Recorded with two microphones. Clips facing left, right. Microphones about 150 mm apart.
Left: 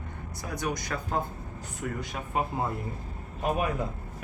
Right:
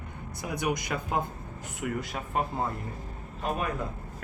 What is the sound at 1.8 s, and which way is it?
Speech, 5° right (ahead or behind).